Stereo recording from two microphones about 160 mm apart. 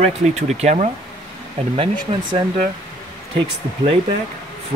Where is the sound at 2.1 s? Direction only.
35° right (ahead or behind).